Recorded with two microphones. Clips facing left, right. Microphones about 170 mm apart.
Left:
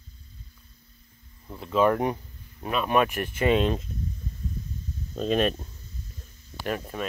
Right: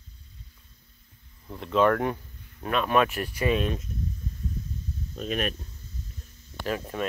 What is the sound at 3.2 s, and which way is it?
Speech, 50° left (ahead or behind).